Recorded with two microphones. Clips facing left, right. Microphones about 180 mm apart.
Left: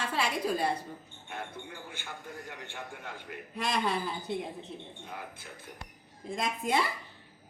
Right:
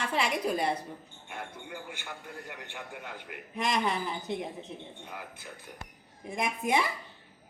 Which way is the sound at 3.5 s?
20° right (ahead or behind).